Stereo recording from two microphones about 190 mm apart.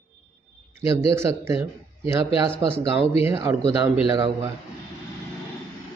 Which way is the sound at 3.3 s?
15° right (ahead or behind).